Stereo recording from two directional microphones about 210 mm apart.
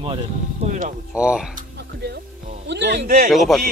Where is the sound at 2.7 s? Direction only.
55° right (ahead or behind).